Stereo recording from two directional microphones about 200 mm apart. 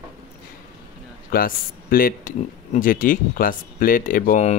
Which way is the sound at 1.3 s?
45° left (ahead or behind).